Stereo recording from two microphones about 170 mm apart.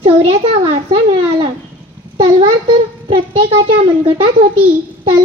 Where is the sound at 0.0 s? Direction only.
35° right (ahead or behind).